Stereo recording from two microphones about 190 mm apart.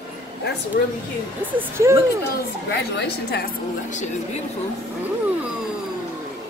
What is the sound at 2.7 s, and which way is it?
Speech, 60° left (ahead or behind).